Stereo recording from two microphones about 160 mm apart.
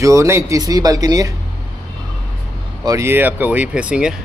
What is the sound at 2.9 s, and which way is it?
A man's voice, 15° right (ahead or behind).